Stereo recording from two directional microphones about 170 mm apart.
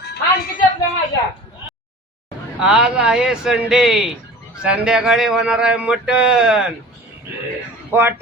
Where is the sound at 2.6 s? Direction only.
5° right (ahead or behind).